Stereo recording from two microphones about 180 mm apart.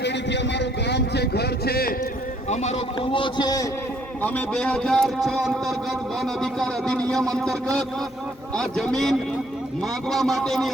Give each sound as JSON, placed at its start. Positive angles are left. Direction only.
{"t": 0.0, "sound": "vehicle", "side_deg": 75}
{"t": 2.5, "sound": "a man's voice", "side_deg": 40}
{"t": 4.2, "sound": "a man's voice", "side_deg": 5}